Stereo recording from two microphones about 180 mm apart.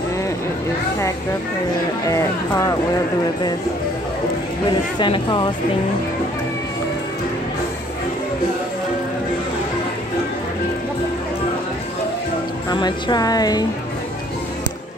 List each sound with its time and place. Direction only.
2.0 s speech: 20° left (ahead or behind)
4.9 s speech: 25° left (ahead or behind)
12.6 s speech: 25° left (ahead or behind)